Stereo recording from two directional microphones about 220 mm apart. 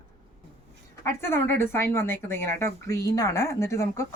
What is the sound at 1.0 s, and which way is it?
Speech, 10° left (ahead or behind).